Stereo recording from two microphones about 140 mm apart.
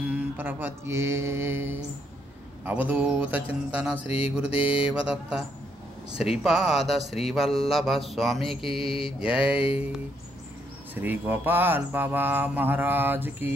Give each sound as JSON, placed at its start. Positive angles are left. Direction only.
{"t": 0.0, "sound": "mantra", "side_deg": -10}
{"t": 2.6, "sound": "speech", "side_deg": -10}
{"t": 4.5, "sound": "mantra", "side_deg": 40}
{"t": 4.8, "sound": "speech", "side_deg": -5}
{"t": 8.8, "sound": "mantra", "side_deg": 40}
{"t": 9.2, "sound": "speech", "side_deg": -5}
{"t": 9.6, "sound": "speech", "side_deg": 45}
{"t": 11.0, "sound": "speech", "side_deg": -15}